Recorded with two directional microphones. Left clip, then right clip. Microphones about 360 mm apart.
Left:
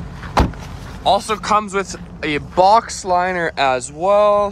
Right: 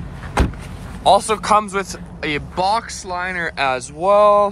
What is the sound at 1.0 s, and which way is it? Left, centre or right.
Speech, centre.